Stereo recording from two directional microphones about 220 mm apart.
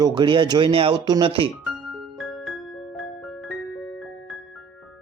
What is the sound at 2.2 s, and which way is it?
Music, centre (ahead or behind).